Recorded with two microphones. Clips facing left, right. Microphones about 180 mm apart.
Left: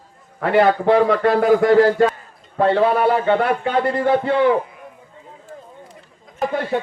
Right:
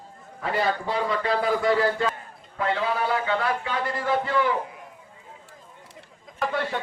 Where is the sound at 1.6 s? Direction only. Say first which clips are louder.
Left 9 dB; 45° left (ahead or behind).